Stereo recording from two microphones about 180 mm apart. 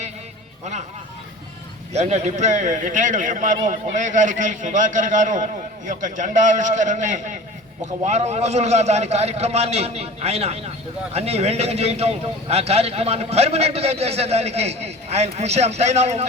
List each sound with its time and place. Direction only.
1.9 s a man's voice: 40° right (ahead or behind)